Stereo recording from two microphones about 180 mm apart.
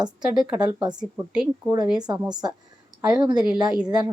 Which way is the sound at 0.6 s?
25° right (ahead or behind).